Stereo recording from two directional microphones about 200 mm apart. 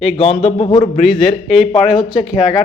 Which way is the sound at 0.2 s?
30° left (ahead or behind).